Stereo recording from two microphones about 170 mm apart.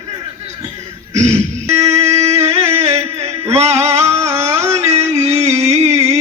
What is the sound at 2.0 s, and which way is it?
Music, 40° right (ahead or behind).